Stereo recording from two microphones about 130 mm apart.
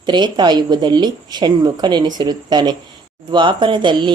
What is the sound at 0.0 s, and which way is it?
A woman's voice, 35° right (ahead or behind).